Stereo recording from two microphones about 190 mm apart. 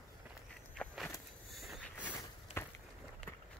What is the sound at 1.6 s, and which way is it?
Vehicle, 5° left (ahead or behind).